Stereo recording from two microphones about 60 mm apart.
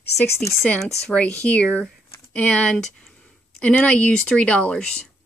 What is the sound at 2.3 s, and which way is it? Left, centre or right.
Speech, centre.